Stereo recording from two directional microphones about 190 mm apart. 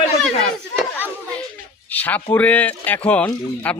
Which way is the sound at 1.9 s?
10° left (ahead or behind).